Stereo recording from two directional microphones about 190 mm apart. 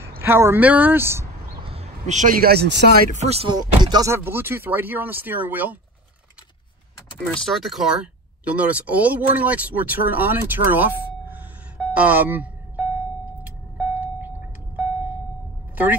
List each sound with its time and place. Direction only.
0.2 s speech: 10° right (ahead or behind)
1.6 s speech: 30° right (ahead or behind); by 2.9 s 60° right (ahead or behind)
3.1 s speech: 35° right (ahead or behind)
3.5 s speech: 20° right (ahead or behind)
7.2 s speech: 5° left (ahead or behind); by 11.4 s 10° right (ahead or behind)
11.9 s a sound: 10° right (ahead or behind)
13.4 s vehicle: 10° right (ahead or behind)
15.7 s vehicle: 10° right (ahead or behind)